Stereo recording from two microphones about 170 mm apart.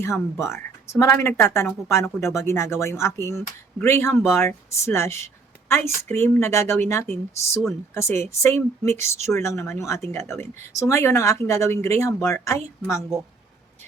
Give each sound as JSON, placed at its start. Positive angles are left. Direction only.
{"t": 0.0, "sound": "speech", "side_deg": 15}